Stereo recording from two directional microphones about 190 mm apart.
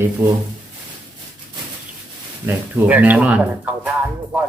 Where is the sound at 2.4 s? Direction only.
10° right (ahead or behind).